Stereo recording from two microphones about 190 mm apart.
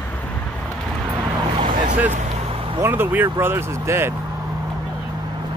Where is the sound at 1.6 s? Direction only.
45° right (ahead or behind).